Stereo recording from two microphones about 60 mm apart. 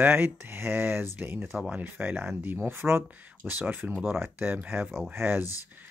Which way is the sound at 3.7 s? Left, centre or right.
Right.